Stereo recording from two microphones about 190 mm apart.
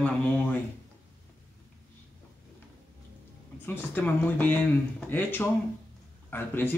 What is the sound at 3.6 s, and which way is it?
Speech, 10° left (ahead or behind).